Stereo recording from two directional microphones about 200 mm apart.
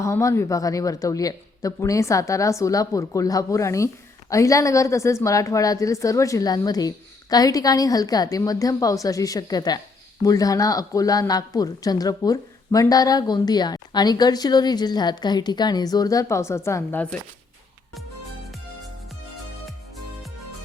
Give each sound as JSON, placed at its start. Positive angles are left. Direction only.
{"t": 0.0, "sound": "a woman's voice", "side_deg": 15}